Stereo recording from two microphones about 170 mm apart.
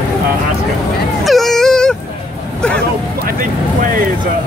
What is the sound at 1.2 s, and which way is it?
Wail, centre (ahead or behind).